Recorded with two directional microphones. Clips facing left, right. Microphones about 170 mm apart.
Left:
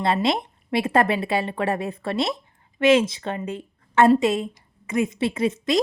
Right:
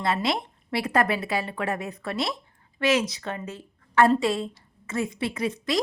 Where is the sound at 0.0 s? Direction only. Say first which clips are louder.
Left 4 dB; 25° left (ahead or behind).